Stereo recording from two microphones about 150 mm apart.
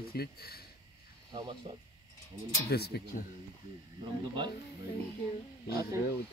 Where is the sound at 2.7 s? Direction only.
90° left.